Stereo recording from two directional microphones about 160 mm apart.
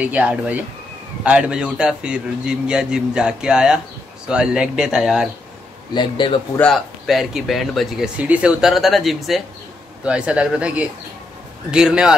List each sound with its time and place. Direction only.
0.0 s speech: 10° right (ahead or behind)
5.9 s speech: 30° left (ahead or behind)
6.6 s speech: centre (ahead or behind)